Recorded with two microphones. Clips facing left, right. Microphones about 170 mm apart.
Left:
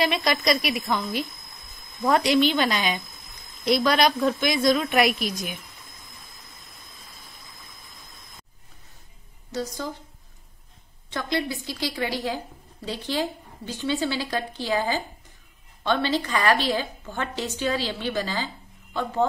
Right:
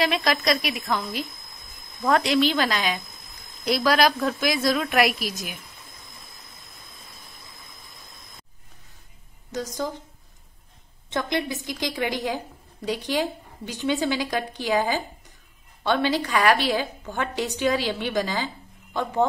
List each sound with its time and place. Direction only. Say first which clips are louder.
0.0 s a woman's voice: even; centre (ahead or behind)
9.5 s speech: right 1 dB; 15° right (ahead or behind)
11.1 s a woman's voice: right 1 dB; 20° right (ahead or behind)